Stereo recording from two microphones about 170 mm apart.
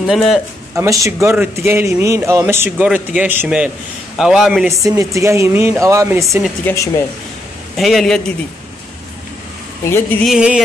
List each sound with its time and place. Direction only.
0.0 s a man's voice: centre (ahead or behind)
0.7 s a man's voice: 20° right (ahead or behind); by 4.6 s 5° right (ahead or behind)
4.6 s speech: 20° right (ahead or behind)
6.6 s speech: 15° left (ahead or behind)
7.7 s a man's voice: centre (ahead or behind)
9.8 s speech: 15° left (ahead or behind)
10.2 s a man's voice: 5° right (ahead or behind)